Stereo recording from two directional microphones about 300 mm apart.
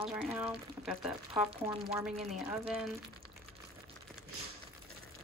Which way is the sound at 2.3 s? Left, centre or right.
Centre.